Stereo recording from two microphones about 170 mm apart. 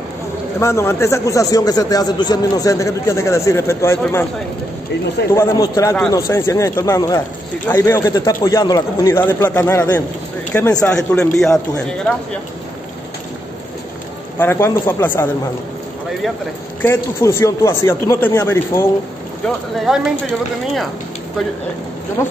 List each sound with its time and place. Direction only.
0.6 s a man's voice: 15° left (ahead or behind)
5.3 s a man's voice: 15° left (ahead or behind)
14.4 s a man's voice: 15° left (ahead or behind)
16.8 s a man's voice: 15° left (ahead or behind)
19.4 s a man's voice: centre (ahead or behind)
22.2 s a man's voice: 15° left (ahead or behind)